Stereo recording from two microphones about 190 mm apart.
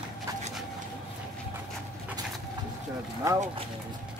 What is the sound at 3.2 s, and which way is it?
Speech, 15° right (ahead or behind).